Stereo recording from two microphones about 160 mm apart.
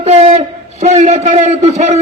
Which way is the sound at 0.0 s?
40° right (ahead or behind).